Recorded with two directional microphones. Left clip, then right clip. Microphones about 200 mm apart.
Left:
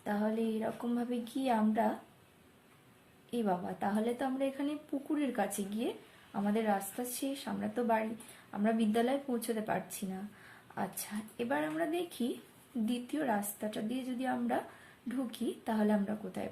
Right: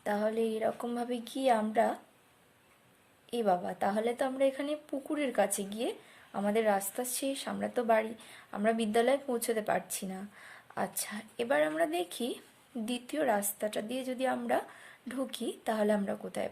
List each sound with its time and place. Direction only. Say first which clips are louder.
0.0 s a woman's voice: right 4 dB; 50° right (ahead or behind)
3.2 s a woman's voice: right 5 dB; 50° right (ahead or behind)